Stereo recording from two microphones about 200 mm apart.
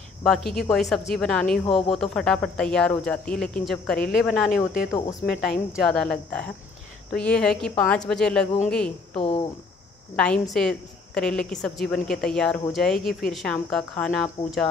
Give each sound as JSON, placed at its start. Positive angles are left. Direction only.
{"t": 0.2, "sound": "a woman's voice", "side_deg": 0}
{"t": 5.9, "sound": "a woman's voice", "side_deg": 5}
{"t": 9.1, "sound": "speech", "side_deg": 25}
{"t": 10.1, "sound": "a woman's voice", "side_deg": 5}